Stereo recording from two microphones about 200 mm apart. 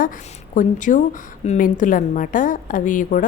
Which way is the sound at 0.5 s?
40° left (ahead or behind).